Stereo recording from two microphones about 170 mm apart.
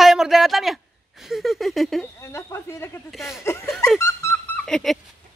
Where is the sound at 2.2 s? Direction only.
15° left (ahead or behind).